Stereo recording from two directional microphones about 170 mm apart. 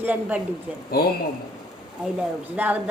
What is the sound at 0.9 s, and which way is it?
Speech, 65° left (ahead or behind).